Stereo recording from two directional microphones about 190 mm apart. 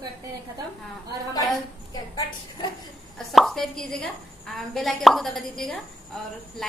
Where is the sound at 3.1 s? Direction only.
Centre (ahead or behind).